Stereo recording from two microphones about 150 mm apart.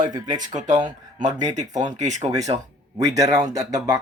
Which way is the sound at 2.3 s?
25° right (ahead or behind).